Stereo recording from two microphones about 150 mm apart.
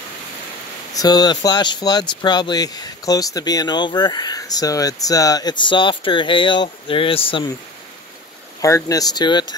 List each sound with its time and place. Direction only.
0.9 s speech: 25° left (ahead or behind)
8.5 s speech: 20° left (ahead or behind)